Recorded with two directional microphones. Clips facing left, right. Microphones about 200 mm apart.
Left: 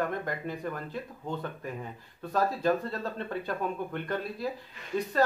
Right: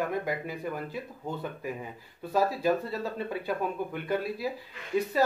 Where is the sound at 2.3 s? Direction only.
5° right (ahead or behind).